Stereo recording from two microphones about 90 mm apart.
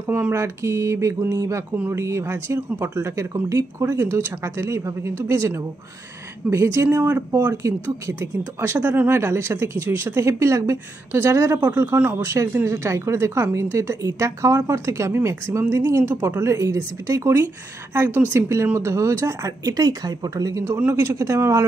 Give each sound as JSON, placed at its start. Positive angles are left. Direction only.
{"t": 0.0, "sound": "a woman's voice", "side_deg": -25}
{"t": 20.6, "sound": "a woman's voice", "side_deg": -30}